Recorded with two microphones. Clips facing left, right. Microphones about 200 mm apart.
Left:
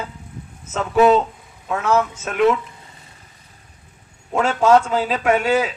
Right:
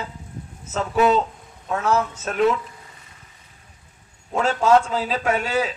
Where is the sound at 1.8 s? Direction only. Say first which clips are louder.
Left 3 dB; 35° right (ahead or behind).